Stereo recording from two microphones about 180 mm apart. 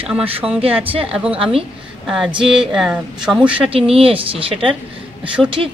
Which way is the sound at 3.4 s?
30° right (ahead or behind).